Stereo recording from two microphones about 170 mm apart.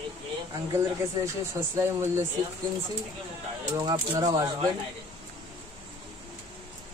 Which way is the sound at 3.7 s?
25° right (ahead or behind).